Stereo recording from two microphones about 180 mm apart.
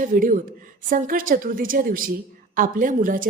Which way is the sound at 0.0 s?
50° right (ahead or behind).